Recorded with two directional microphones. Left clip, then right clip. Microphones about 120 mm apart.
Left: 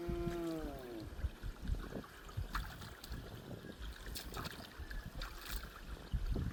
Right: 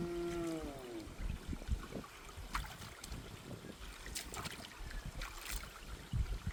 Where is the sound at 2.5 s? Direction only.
Centre (ahead or behind).